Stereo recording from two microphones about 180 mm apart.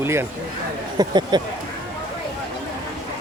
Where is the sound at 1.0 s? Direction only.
25° right (ahead or behind).